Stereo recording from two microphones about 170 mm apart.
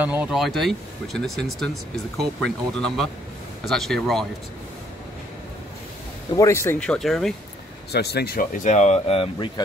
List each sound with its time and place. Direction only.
0.0 s speech: 10° right (ahead or behind)
6.3 s speech: 15° left (ahead or behind); by 7.3 s centre (ahead or behind)
7.9 s speech: 70° left (ahead or behind)
8.6 s speech: 45° left (ahead or behind)